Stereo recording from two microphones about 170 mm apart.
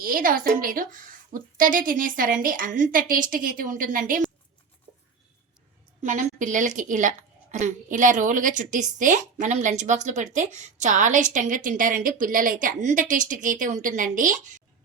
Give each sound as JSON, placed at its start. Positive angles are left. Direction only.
{"t": 0.0, "sound": "a woman's voice", "side_deg": -55}
{"t": 6.0, "sound": "a woman's voice", "side_deg": -45}